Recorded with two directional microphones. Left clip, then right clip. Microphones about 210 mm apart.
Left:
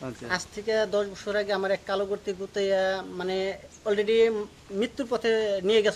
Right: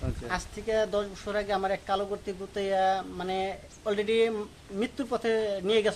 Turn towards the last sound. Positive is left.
turn(degrees=20)  # may be behind; listen again after turning